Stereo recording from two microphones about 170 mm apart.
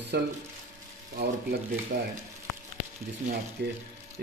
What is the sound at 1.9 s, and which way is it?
Speech, 75° right (ahead or behind).